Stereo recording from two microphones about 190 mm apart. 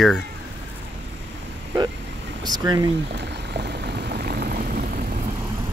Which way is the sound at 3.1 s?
60° right (ahead or behind).